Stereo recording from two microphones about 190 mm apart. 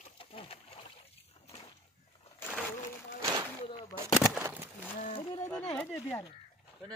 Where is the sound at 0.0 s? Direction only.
30° left (ahead or behind).